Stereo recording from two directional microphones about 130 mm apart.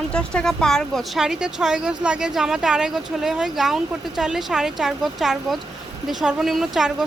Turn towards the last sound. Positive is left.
turn(degrees=-5)  # may be behind; listen again after turning